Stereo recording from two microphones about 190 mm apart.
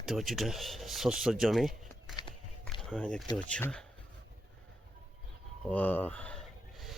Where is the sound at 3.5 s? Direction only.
5° left (ahead or behind).